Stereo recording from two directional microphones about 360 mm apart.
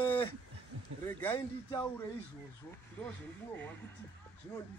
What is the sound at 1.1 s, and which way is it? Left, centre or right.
Speech, centre.